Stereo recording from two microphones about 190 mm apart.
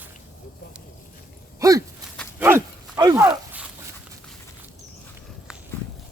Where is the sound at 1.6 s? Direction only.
15° right (ahead or behind).